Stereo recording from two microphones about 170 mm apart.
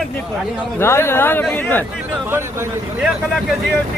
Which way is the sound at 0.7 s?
15° left (ahead or behind).